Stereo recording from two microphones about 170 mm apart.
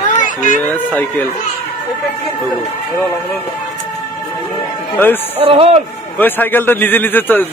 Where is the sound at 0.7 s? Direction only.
10° left (ahead or behind).